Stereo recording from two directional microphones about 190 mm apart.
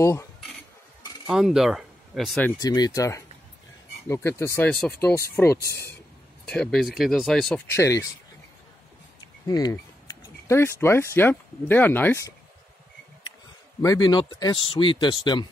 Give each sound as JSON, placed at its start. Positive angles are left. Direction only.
{"t": 0.0, "sound": "speech", "side_deg": 15}
{"t": 1.2, "sound": "speech", "side_deg": -5}
{"t": 2.6, "sound": "speech", "side_deg": 20}
{"t": 7.7, "sound": "speech", "side_deg": 15}
{"t": 9.5, "sound": "speech", "side_deg": 20}
{"t": 13.7, "sound": "speech", "side_deg": 20}